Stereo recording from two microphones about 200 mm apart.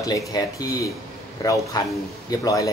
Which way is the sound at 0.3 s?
20° left (ahead or behind).